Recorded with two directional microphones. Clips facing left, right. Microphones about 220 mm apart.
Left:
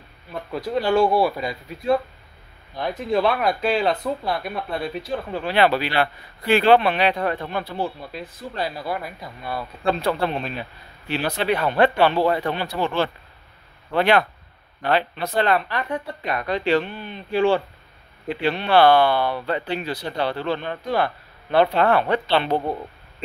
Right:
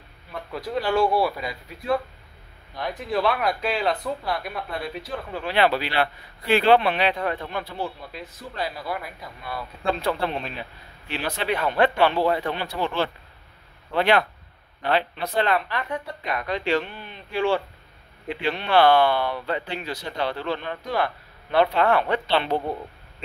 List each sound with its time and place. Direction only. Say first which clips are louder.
0.5 s speech: left 4 dB; 25° left (ahead or behind)
5.5 s speech: left 2 dB; 45° left (ahead or behind)